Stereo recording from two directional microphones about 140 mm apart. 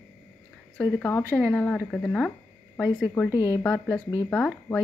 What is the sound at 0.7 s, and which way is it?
Speech, 10° left (ahead or behind).